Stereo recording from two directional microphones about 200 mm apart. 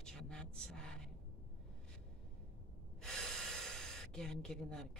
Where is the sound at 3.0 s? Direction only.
5° left (ahead or behind).